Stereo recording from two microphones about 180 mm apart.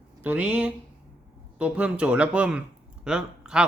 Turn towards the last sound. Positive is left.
turn(degrees=-5)  # may be behind; listen again after turning